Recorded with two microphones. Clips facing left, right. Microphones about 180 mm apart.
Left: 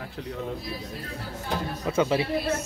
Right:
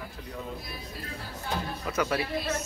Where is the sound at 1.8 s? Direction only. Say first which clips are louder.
Left 6 dB; 25° left (ahead or behind).